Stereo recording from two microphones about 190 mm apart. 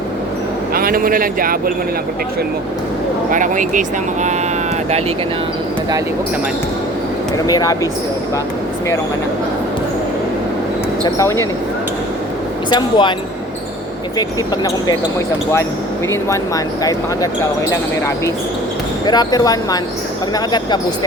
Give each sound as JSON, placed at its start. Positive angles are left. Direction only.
{"t": 0.7, "sound": "speech", "side_deg": -50}
{"t": 3.3, "sound": "speech", "side_deg": -45}
{"t": 7.4, "sound": "speech", "side_deg": 20}
{"t": 11.0, "sound": "speech", "side_deg": 15}
{"t": 12.7, "sound": "speech", "side_deg": 25}
{"t": 14.2, "sound": "speech", "side_deg": 20}
{"t": 19.0, "sound": "speech", "side_deg": 20}